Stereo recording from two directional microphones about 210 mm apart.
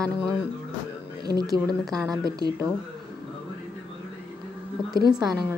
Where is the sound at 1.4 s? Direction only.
20° right (ahead or behind).